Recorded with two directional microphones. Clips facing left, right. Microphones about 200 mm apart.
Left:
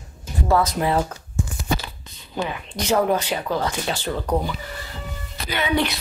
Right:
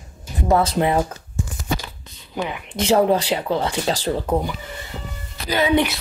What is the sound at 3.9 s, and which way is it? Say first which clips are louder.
Speech: right 4 dB; 35° right (ahead or behind).